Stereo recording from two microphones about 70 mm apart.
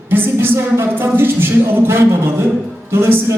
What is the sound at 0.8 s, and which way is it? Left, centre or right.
Speech, right.